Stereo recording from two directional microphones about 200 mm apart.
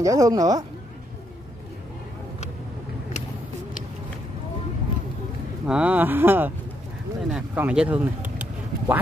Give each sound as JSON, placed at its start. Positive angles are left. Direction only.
{"t": 0.0, "sound": "speech", "side_deg": -15}
{"t": 5.7, "sound": "speech", "side_deg": -5}